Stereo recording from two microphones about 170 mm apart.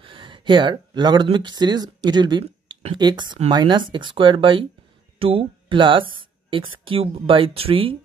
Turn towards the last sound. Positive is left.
turn(degrees=-35)  # may be behind; listen again after turning